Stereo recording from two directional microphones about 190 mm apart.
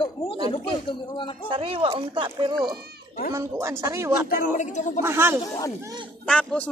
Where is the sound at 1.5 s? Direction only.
30° right (ahead or behind).